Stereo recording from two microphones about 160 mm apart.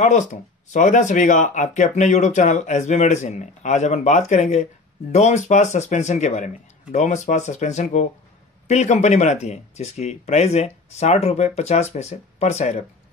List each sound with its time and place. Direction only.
0.0 s speech: 50° left (ahead or behind)